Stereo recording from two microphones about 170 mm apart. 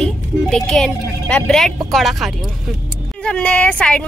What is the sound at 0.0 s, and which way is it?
A woman's voice, 5° left (ahead or behind).